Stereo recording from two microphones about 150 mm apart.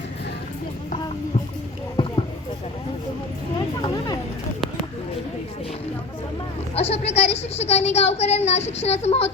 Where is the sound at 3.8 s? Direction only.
25° left (ahead or behind).